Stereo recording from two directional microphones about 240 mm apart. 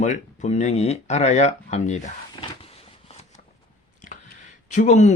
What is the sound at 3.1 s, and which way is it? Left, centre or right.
Shuffling cards, left.